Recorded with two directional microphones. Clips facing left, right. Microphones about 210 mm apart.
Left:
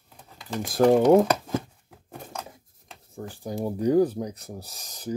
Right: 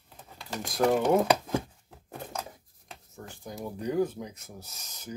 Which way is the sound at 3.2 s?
35° left (ahead or behind).